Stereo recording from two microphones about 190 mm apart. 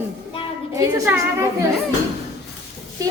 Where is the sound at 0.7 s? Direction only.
15° right (ahead or behind).